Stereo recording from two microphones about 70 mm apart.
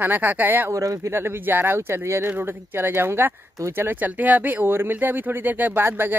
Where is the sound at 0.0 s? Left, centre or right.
Right.